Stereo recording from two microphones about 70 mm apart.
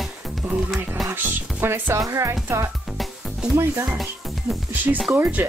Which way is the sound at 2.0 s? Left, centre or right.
Right.